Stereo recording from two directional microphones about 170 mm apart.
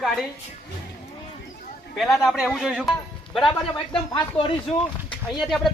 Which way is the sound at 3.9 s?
30° left (ahead or behind).